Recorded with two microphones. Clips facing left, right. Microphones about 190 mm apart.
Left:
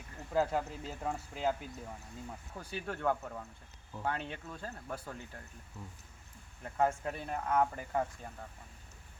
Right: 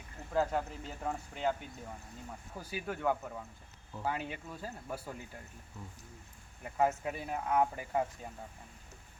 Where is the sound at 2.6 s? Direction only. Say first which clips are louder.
Right 1 dB; 5° right (ahead or behind).